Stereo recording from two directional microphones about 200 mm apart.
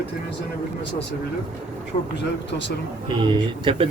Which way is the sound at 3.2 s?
25° right (ahead or behind).